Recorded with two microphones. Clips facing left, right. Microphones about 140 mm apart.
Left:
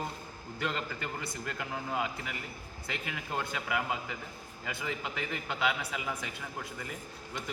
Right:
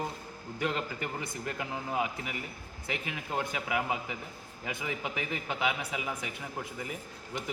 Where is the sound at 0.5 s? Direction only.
15° right (ahead or behind).